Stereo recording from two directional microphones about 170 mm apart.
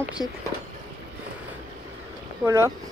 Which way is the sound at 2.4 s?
15° right (ahead or behind).